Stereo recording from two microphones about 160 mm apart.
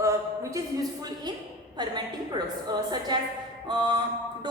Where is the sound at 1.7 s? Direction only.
25° right (ahead or behind).